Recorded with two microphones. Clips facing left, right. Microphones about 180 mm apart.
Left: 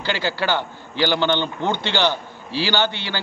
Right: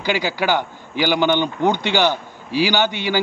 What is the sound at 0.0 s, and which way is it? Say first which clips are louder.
Speech: right 3 dB; 10° right (ahead or behind).